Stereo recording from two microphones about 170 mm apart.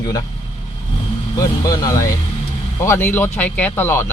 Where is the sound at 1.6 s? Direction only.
20° left (ahead or behind).